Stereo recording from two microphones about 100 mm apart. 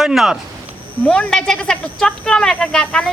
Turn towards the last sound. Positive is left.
turn(degrees=10)  # may be behind; listen again after turning